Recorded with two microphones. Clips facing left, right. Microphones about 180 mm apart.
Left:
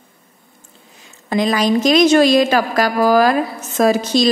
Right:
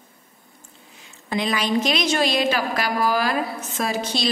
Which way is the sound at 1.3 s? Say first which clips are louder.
Left 7 dB; 40° left (ahead or behind).